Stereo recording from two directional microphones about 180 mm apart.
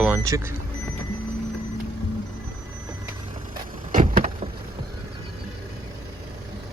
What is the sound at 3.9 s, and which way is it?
Vehicle, 50° right (ahead or behind).